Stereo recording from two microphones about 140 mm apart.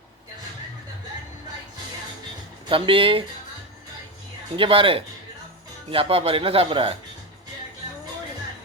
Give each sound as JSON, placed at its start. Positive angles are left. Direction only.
{"t": 2.6, "sound": "speech", "side_deg": -40}
{"t": 4.5, "sound": "speech", "side_deg": -40}